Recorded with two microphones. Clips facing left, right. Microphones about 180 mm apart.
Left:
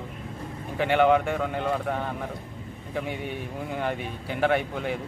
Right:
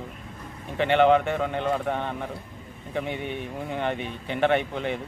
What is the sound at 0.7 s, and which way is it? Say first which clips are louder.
Speech: right 1 dB; 5° left (ahead or behind).